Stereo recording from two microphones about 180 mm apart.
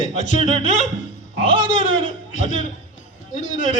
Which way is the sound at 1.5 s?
45° left (ahead or behind).